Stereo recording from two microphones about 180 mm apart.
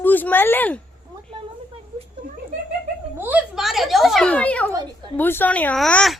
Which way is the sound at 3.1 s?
10° right (ahead or behind).